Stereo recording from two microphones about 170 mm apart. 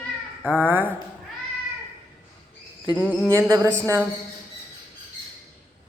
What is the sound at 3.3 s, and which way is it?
Speech, 15° right (ahead or behind).